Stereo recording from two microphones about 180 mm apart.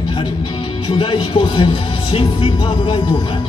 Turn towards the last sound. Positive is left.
turn(degrees=25)  # may be behind; listen again after turning